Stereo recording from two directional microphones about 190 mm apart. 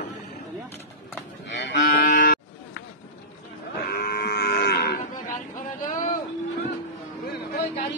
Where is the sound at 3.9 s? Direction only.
55° left (ahead or behind).